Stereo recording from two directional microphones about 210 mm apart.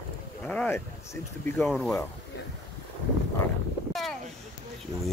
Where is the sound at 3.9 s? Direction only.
Centre (ahead or behind).